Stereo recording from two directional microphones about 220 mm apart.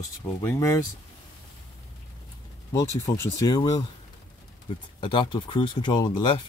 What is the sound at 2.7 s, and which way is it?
Speech, 15° left (ahead or behind).